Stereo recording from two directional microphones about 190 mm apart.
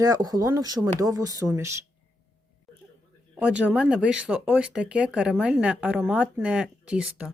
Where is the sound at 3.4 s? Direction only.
5° right (ahead or behind).